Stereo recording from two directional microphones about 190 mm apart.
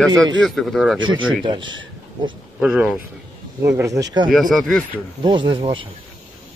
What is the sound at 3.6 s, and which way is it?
Speech, 15° right (ahead or behind).